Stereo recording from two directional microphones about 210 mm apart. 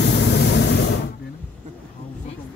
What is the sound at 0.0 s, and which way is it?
Spray, 55° left (ahead or behind).